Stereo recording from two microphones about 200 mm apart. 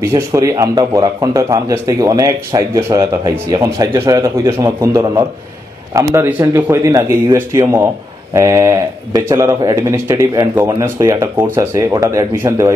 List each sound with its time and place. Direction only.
0.1 s a man's voice: 15° right (ahead or behind)